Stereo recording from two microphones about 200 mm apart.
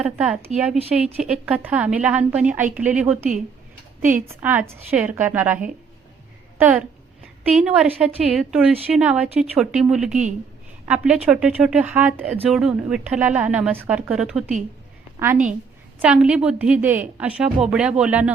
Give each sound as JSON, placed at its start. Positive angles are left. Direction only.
{"t": 0.0, "sound": "a woman's voice", "side_deg": -5}